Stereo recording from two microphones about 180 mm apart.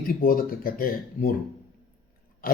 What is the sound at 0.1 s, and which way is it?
A man's voice, 55° left (ahead or behind).